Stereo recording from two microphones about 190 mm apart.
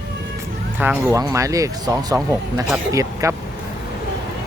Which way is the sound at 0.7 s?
10° right (ahead or behind).